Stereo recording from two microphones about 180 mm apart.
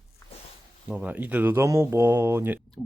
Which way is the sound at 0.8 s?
10° right (ahead or behind).